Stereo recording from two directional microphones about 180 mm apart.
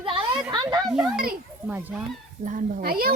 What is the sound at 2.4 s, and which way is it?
Speech, 50° right (ahead or behind).